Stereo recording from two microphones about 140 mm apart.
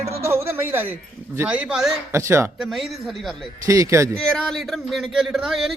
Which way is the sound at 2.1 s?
20° right (ahead or behind).